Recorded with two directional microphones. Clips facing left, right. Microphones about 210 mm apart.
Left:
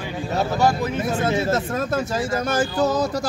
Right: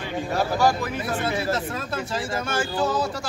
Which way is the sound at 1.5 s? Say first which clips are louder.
Left 5 dB; 45° left (ahead or behind).